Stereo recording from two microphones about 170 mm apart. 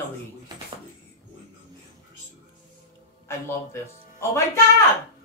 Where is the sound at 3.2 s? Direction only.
15° left (ahead or behind).